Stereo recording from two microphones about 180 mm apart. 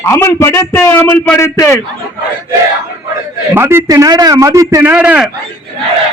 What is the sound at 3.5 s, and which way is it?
A man's voice, 15° right (ahead or behind).